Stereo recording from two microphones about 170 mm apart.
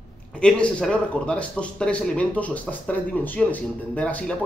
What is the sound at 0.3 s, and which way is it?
A man's voice, 5° left (ahead or behind).